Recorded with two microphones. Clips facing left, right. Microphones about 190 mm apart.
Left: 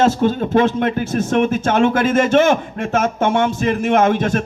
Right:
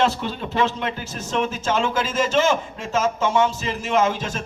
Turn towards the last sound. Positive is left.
turn(degrees=55)  # may be behind; listen again after turning